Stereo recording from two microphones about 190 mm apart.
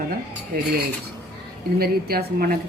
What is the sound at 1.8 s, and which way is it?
Speech, 55° right (ahead or behind).